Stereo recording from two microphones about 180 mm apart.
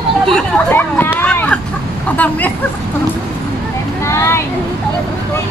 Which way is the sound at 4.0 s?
15° left (ahead or behind).